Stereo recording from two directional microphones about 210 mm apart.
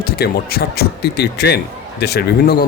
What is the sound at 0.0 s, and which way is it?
Speech, 50° left (ahead or behind).